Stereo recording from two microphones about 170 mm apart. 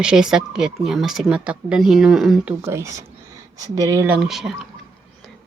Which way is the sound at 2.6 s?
15° right (ahead or behind).